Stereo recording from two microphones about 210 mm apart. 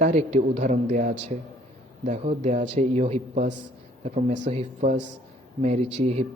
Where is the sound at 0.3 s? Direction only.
35° right (ahead or behind).